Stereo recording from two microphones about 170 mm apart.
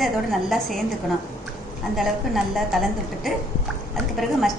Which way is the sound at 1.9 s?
Centre (ahead or behind).